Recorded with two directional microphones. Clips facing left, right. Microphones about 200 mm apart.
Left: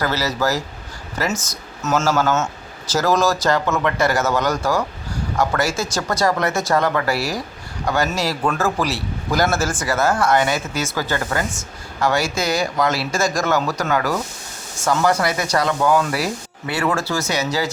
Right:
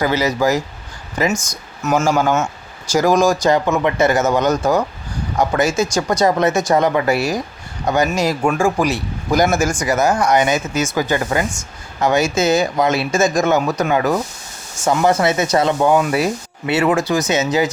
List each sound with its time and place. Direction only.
0.0 s speech: 15° right (ahead or behind)